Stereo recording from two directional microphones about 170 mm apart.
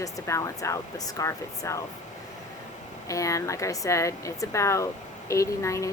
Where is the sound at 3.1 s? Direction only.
20° left (ahead or behind).